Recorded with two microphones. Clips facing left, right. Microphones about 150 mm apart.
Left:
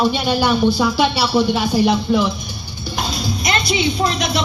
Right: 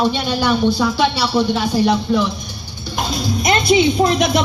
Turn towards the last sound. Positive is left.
turn(degrees=-50)  # may be behind; listen again after turning